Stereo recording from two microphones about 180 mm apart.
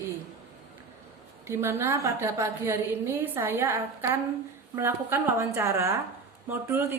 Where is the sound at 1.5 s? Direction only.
15° right (ahead or behind).